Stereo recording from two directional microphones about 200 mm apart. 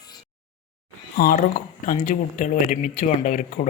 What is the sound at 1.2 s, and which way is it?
Speech, 45° left (ahead or behind).